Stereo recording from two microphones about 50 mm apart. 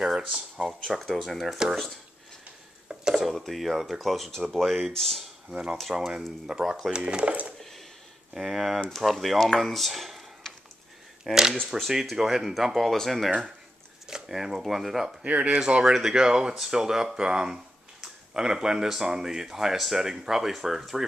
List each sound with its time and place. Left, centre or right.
0.1 s speech: centre
0.7 s speech: centre
2.9 s dishes: centre
3.3 s speech: centre
5.5 s speech: centre
8.4 s speech: centre
9.6 s a sound: centre
11.3 s speech: centre
14.0 s speech: centre
15.2 s speech: right
15.8 s speech: centre